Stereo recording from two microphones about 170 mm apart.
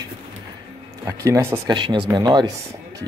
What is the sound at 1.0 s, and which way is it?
Speech, 15° right (ahead or behind).